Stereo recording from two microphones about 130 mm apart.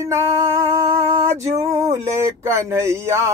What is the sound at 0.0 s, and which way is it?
Music, 20° right (ahead or behind).